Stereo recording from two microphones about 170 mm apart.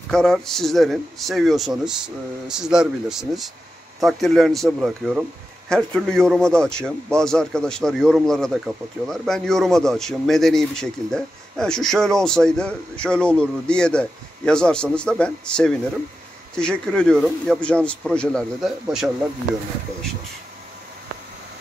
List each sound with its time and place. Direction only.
0.1 s a man's voice: 5° left (ahead or behind)